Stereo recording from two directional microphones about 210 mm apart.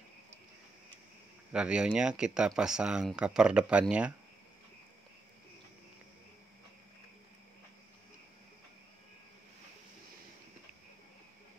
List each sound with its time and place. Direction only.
1.5 s speech: 5° right (ahead or behind)